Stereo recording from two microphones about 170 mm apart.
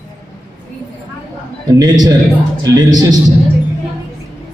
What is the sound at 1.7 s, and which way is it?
A man's voice, 25° right (ahead or behind).